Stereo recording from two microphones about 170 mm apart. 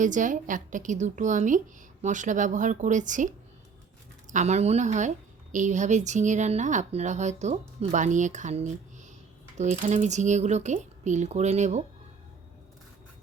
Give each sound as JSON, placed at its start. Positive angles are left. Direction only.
{"t": 0.0, "sound": "a woman's voice", "side_deg": -50}
{"t": 4.3, "sound": "a woman's voice", "side_deg": -45}